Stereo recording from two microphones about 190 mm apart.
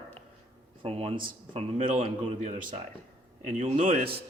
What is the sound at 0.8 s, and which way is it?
Speech, 30° right (ahead or behind).